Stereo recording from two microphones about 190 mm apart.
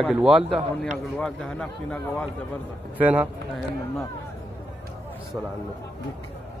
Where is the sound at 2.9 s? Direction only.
5° right (ahead or behind).